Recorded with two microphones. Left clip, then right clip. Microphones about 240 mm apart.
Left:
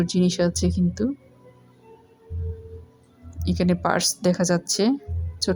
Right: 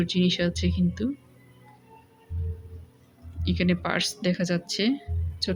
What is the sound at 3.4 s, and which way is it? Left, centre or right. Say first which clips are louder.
Speech: left 4 dB; centre.